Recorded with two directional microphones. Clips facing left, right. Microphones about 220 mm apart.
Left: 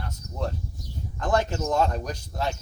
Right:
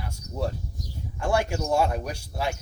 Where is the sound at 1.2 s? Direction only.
10° right (ahead or behind).